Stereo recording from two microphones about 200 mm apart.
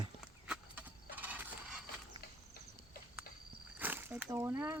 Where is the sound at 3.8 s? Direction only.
10° right (ahead or behind).